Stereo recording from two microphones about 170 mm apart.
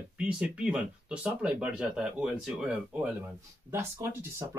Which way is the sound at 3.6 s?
15° right (ahead or behind).